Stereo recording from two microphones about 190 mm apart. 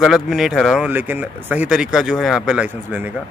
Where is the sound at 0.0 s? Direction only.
Centre (ahead or behind).